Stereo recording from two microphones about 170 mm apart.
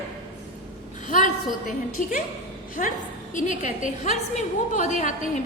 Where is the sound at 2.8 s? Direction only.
45° left (ahead or behind).